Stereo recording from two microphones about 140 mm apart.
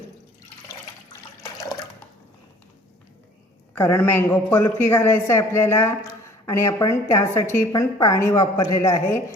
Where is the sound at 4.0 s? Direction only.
15° left (ahead or behind).